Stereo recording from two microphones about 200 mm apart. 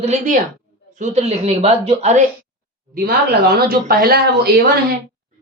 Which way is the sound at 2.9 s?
50° right (ahead or behind).